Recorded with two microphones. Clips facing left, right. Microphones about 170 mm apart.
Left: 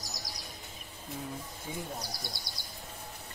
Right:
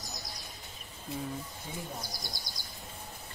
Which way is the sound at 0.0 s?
90° left.